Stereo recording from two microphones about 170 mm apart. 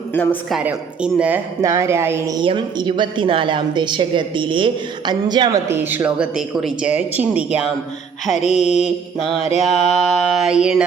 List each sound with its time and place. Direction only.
0.1 s a woman's voice: 10° left (ahead or behind)
0.5 s speech: 5° right (ahead or behind)
1.6 s a woman's voice: 15° right (ahead or behind)
8.3 s mantra: 40° left (ahead or behind)
9.9 s mantra: centre (ahead or behind)